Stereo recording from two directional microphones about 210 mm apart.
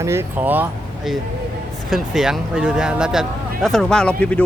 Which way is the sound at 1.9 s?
Centre (ahead or behind).